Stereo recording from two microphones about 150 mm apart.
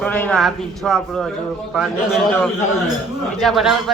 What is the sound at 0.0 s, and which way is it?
A man's voice, 10° left (ahead or behind).